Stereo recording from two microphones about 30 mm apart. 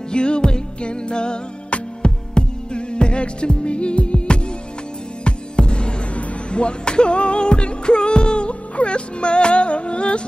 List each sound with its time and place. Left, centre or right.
0.1 s music: left